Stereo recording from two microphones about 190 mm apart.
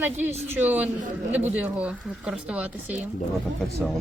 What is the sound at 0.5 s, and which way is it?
Speech, 10° right (ahead or behind).